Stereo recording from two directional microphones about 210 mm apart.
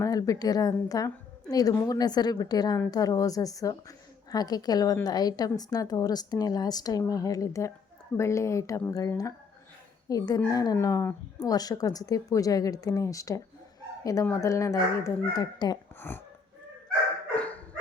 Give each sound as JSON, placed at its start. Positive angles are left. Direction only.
{"t": 0.0, "sound": "a woman's voice", "side_deg": 15}
{"t": 17.3, "sound": "dog", "side_deg": 5}